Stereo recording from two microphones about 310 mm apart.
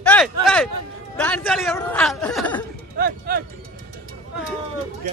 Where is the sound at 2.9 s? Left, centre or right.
Right.